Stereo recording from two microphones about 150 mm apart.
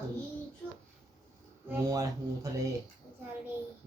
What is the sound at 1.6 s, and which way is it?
Speech, 20° right (ahead or behind).